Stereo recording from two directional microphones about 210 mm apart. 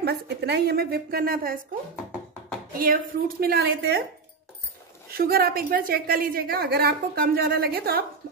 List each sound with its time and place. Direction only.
0.0 s a woman's voice: 50° right (ahead or behind)
2.8 s a woman's voice: 45° right (ahead or behind)
5.1 s a woman's voice: 45° right (ahead or behind)